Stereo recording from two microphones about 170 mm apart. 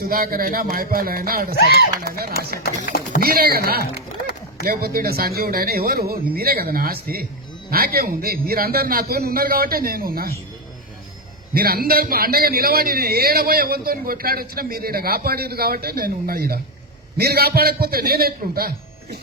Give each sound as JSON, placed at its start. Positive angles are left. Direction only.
{"t": 0.0, "sound": "a man's voice", "side_deg": -60}
{"t": 1.5, "sound": "speech", "side_deg": 70}
{"t": 2.0, "sound": "a man's voice", "side_deg": -65}
{"t": 2.8, "sound": "speech", "side_deg": 50}
{"t": 3.2, "sound": "a man's voice", "side_deg": -65}
{"t": 11.5, "sound": "a man's voice", "side_deg": -60}